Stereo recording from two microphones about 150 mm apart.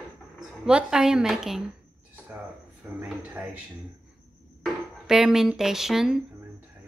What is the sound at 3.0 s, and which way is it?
Speech, 10° right (ahead or behind).